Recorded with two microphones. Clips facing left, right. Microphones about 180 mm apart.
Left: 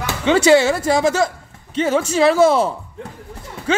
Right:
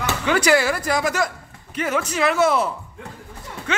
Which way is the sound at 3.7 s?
30° left (ahead or behind).